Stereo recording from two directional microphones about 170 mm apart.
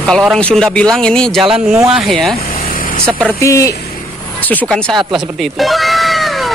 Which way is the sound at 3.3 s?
15° left (ahead or behind).